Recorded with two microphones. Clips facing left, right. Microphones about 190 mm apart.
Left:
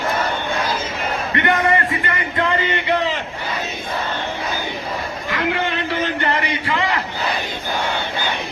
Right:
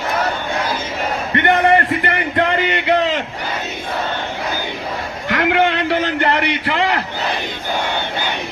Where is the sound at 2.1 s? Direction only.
70° right (ahead or behind).